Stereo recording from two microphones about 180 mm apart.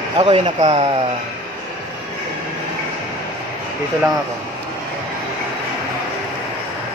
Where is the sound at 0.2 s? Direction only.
30° right (ahead or behind).